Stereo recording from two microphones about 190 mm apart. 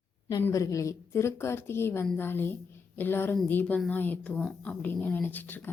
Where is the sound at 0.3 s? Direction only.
20° left (ahead or behind).